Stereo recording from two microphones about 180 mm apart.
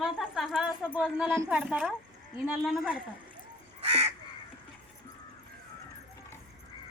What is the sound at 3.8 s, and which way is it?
Crow, 35° right (ahead or behind).